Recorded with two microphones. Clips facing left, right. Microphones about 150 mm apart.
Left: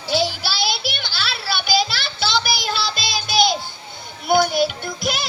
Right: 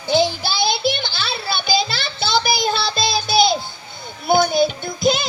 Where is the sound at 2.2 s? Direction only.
25° right (ahead or behind).